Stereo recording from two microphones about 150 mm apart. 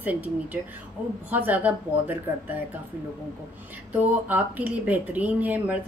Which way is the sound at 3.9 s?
10° right (ahead or behind).